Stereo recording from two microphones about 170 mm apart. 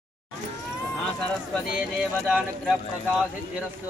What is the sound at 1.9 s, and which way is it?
Speech, 5° right (ahead or behind).